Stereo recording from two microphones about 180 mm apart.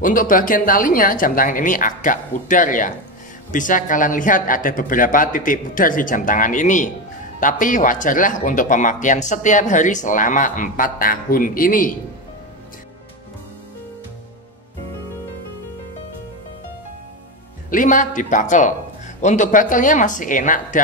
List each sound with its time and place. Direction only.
0.0 s speech: 50° left (ahead or behind)
17.6 s speech: 45° left (ahead or behind)